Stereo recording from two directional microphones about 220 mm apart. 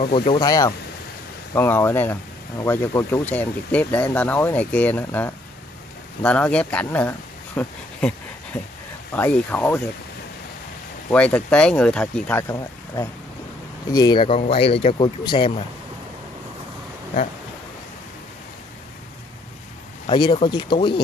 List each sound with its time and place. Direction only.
0.0 s speech: 25° left (ahead or behind); by 8.1 s 5° left (ahead or behind)
9.1 s speech: 5° left (ahead or behind)
11.1 s speech: 5° left (ahead or behind); by 15.6 s 20° left (ahead or behind)
20.1 s speech: 20° left (ahead or behind)